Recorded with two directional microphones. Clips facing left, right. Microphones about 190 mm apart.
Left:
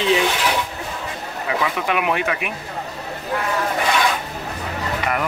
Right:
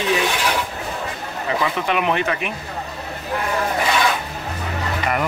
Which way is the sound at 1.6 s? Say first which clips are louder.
Right 1 dB; 5° left (ahead or behind).